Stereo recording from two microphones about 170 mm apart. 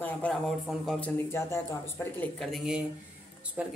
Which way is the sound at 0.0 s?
5° left (ahead or behind).